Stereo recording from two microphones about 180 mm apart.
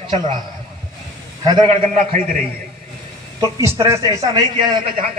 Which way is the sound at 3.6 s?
15° right (ahead or behind).